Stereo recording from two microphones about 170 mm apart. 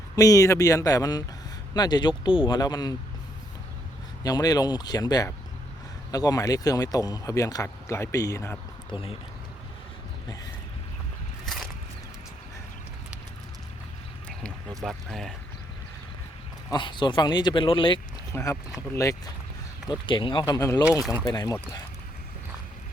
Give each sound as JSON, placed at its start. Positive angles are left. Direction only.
{"t": 0.2, "sound": "speech", "side_deg": 20}
{"t": 4.2, "sound": "speech", "side_deg": 20}
{"t": 14.8, "sound": "speech", "side_deg": 0}
{"t": 16.7, "sound": "speech", "side_deg": 25}
{"t": 18.3, "sound": "speech", "side_deg": 15}
{"t": 19.9, "sound": "speech", "side_deg": 30}